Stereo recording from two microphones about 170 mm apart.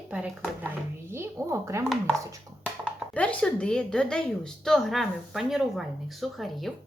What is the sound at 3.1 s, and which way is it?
A woman's voice, 10° left (ahead or behind).